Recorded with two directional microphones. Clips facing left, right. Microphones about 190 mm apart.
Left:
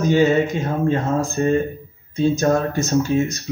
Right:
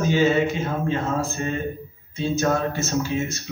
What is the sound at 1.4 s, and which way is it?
A man's voice, 40° left (ahead or behind).